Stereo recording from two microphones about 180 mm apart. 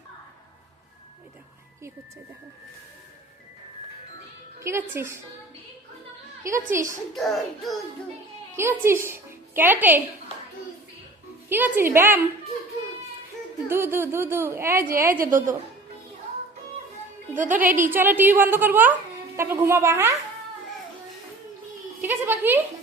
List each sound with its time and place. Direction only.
4.6 s a woman's voice: 15° right (ahead or behind)
6.7 s a woman's voice: 15° right (ahead or behind)
7.1 s music: centre (ahead or behind)
8.5 s a woman's voice: 15° right (ahead or behind)
11.4 s a woman's voice: 10° right (ahead or behind)
13.7 s a woman's voice: 15° right (ahead or behind)
15.2 s a woman's voice: 50° right (ahead or behind)
17.3 s a woman's voice: 45° right (ahead or behind)
17.8 s a woman's voice: 10° right (ahead or behind)
22.0 s a woman's voice: 10° right (ahead or behind)